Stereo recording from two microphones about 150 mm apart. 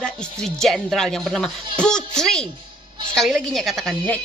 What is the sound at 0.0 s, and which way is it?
A woman's voice, 5° left (ahead or behind).